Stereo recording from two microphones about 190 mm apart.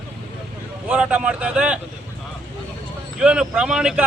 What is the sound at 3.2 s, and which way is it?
Speech, 5° right (ahead or behind).